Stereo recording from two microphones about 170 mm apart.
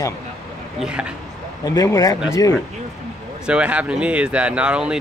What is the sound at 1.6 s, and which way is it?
Speech, 20° left (ahead or behind).